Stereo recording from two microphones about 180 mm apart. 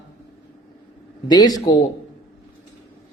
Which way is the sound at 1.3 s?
20° left (ahead or behind).